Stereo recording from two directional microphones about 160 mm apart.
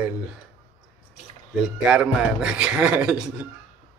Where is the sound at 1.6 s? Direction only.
5° right (ahead or behind).